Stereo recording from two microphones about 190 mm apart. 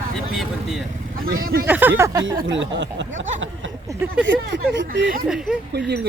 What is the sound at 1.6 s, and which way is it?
Speech, 10° right (ahead or behind).